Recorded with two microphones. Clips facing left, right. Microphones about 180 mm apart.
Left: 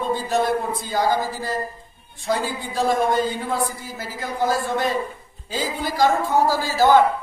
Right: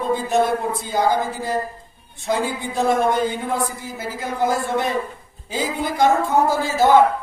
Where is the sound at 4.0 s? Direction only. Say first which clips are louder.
Right 2 dB; 20° right (ahead or behind).